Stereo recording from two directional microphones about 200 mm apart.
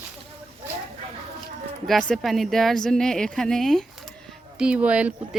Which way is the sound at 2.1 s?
Centre (ahead or behind).